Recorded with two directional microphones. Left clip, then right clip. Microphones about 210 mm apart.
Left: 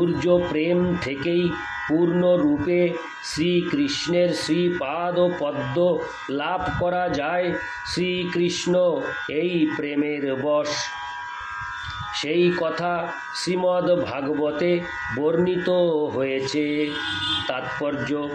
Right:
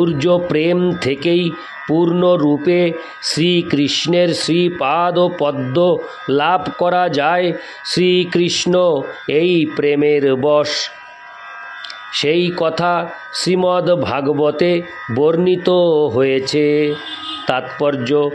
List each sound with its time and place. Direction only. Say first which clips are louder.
0.0 s speech: right 5 dB; 45° right (ahead or behind)
12.1 s speech: right 6 dB; 45° right (ahead or behind)